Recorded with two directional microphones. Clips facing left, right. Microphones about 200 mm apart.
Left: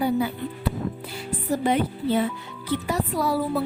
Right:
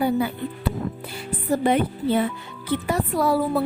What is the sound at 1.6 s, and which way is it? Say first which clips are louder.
Speech: right 2 dB; 55° right (ahead or behind).